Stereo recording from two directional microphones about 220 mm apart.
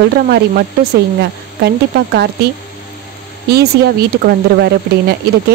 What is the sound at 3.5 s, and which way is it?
Speech, 45° right (ahead or behind).